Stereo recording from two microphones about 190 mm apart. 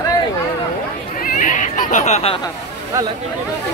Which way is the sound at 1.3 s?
45° left (ahead or behind).